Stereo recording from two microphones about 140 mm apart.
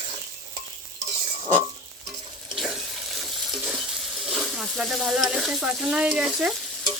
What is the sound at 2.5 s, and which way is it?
Water tap, centre (ahead or behind).